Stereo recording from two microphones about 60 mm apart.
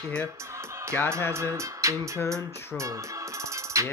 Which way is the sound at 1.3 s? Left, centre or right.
Right.